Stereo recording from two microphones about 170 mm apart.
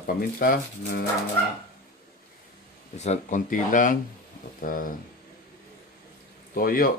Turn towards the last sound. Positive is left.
turn(degrees=60)  # may be behind; listen again after turning